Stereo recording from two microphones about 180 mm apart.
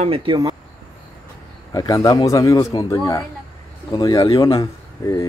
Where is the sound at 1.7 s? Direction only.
20° left (ahead or behind).